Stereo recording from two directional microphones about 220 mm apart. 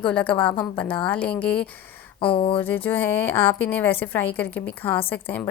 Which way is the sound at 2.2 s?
25° left (ahead or behind).